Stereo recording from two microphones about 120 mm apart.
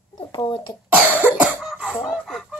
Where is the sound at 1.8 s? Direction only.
Centre (ahead or behind).